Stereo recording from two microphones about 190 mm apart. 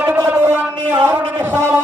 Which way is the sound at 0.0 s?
10° right (ahead or behind).